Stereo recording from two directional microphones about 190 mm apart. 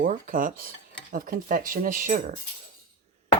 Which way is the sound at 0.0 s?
45° right (ahead or behind).